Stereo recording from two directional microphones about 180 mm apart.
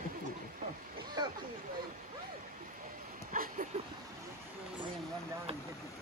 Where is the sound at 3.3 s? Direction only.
50° right (ahead or behind).